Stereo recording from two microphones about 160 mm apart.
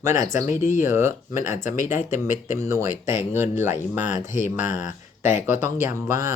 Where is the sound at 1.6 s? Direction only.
50° left (ahead or behind).